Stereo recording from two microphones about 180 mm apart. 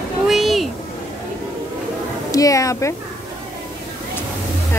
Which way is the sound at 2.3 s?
20° left (ahead or behind).